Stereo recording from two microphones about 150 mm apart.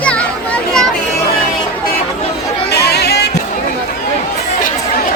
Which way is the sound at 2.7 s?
90° left.